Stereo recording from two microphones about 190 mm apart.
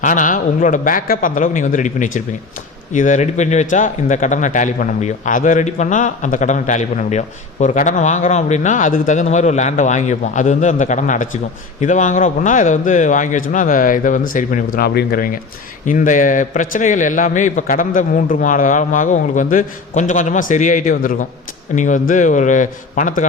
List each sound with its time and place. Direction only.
0.0 s a man's voice: 40° left (ahead or behind)